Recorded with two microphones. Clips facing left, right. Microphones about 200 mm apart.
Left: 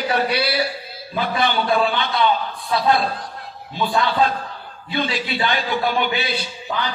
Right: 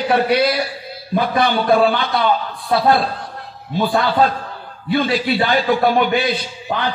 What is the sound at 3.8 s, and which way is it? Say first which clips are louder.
Speech: right 3 dB; 45° right (ahead or behind).